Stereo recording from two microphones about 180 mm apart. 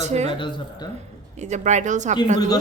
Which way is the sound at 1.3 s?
40° right (ahead or behind).